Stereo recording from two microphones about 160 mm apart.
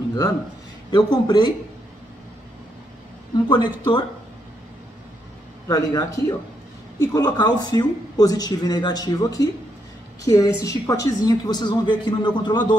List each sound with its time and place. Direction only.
0.8 s speech: 25° left (ahead or behind)
3.4 s speech: 30° left (ahead or behind)
5.7 s speech: 20° left (ahead or behind)